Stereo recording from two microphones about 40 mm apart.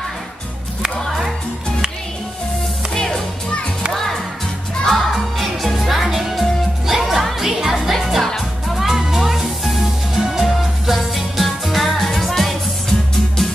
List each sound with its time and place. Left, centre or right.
2.9 s music: centre
3.9 s music: centre